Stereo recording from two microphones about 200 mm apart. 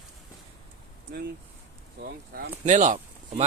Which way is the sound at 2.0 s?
50° right (ahead or behind).